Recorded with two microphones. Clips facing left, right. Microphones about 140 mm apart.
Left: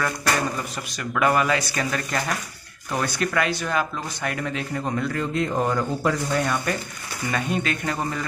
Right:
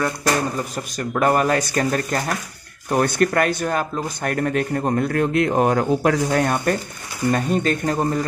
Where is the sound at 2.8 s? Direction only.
55° right (ahead or behind).